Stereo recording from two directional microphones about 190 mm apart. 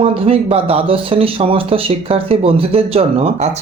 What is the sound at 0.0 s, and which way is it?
Speech, 30° right (ahead or behind).